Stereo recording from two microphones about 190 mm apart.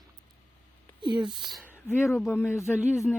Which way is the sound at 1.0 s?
25° right (ahead or behind).